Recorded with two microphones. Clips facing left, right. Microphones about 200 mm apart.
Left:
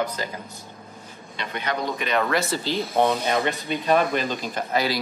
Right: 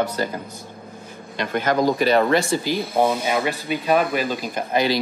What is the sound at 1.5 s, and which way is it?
Speech, 45° right (ahead or behind).